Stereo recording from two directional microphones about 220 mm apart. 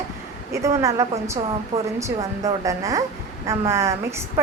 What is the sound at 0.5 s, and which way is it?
A woman's voice, 15° right (ahead or behind).